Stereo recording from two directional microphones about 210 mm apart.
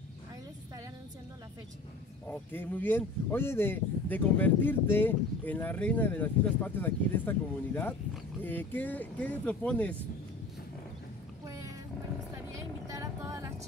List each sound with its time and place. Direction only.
2.2 s speech: 10° left (ahead or behind)
11.4 s roaring cats: 15° right (ahead or behind)
12.4 s vehicle: 15° right (ahead or behind)